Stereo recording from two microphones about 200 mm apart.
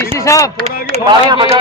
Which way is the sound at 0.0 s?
15° left (ahead or behind).